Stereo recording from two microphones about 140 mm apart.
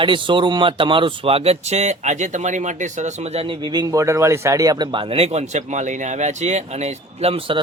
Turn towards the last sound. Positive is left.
turn(degrees=-45)  # may be behind; listen again after turning